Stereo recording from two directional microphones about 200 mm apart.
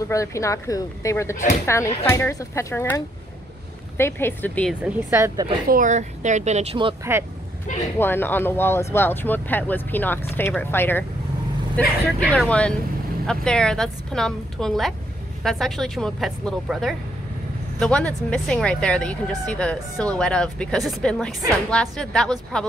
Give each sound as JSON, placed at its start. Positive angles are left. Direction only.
{"t": 0.1, "sound": "speech", "side_deg": 15}
{"t": 4.0, "sound": "speech", "side_deg": 10}
{"t": 4.8, "sound": "speech", "side_deg": -15}
{"t": 5.7, "sound": "speech", "side_deg": -40}
{"t": 8.0, "sound": "speech", "side_deg": 10}